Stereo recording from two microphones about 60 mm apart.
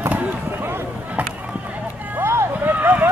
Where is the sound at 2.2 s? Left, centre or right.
Right.